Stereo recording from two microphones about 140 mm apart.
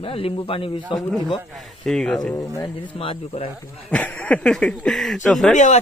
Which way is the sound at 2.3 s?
20° left (ahead or behind).